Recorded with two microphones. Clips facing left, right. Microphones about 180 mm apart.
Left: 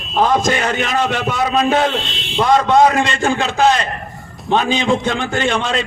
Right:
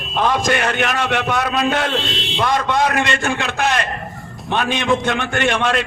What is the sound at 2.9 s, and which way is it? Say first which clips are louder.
A man's voice: left 3 dB; 65° right (ahead or behind).